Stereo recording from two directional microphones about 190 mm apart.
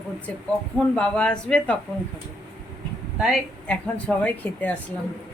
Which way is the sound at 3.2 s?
Centre (ahead or behind).